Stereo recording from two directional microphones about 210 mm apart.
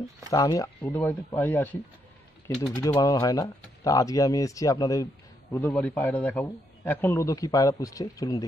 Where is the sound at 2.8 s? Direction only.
20° left (ahead or behind).